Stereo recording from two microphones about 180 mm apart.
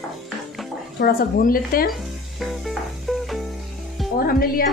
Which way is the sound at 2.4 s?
Centre (ahead or behind).